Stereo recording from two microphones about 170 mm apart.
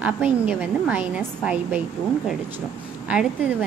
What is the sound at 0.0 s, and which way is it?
A woman's voice, 10° right (ahead or behind).